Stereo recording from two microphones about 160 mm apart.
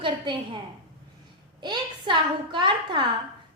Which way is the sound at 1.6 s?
30° right (ahead or behind).